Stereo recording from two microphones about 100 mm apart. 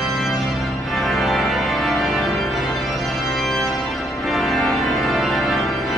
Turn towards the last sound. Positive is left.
turn(degrees=0)  # may be behind; listen again after turning